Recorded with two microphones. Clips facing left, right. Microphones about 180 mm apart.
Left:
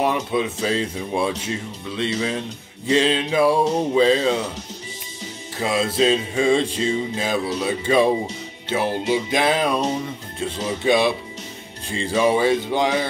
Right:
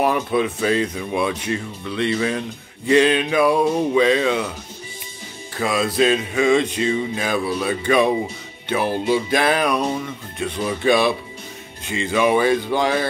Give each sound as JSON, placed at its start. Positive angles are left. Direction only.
{"t": 0.3, "sound": "music", "side_deg": 25}
{"t": 5.6, "sound": "music", "side_deg": 25}
{"t": 11.9, "sound": "music", "side_deg": 35}